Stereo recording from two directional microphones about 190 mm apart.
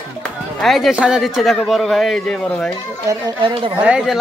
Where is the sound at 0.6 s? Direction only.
Centre (ahead or behind).